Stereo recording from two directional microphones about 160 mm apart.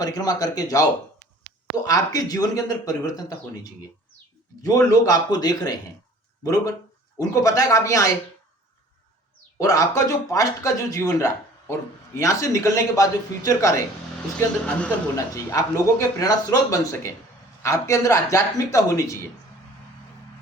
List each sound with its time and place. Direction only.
0.0 s speech: 25° left (ahead or behind)
9.6 s speech: 20° left (ahead or behind)
14.3 s speech: 10° left (ahead or behind)
15.1 s speech: 20° left (ahead or behind)